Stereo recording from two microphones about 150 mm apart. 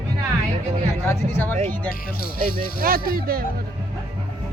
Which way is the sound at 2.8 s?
75° right (ahead or behind).